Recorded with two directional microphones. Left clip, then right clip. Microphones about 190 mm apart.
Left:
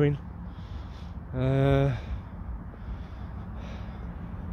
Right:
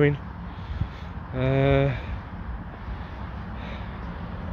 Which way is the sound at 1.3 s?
25° left (ahead or behind).